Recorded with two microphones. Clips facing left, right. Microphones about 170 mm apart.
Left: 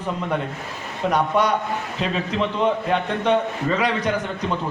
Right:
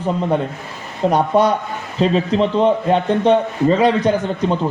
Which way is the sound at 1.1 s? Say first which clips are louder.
Right 5 dB; 30° right (ahead or behind).